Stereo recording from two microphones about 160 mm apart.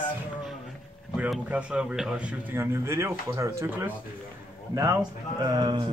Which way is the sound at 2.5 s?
15° right (ahead or behind).